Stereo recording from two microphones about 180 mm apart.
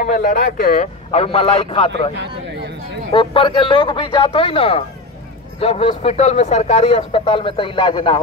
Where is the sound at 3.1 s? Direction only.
30° left (ahead or behind).